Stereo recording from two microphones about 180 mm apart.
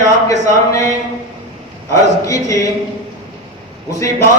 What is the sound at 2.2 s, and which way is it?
Speech, 20° left (ahead or behind).